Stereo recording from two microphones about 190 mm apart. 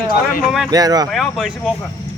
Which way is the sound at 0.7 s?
20° right (ahead or behind).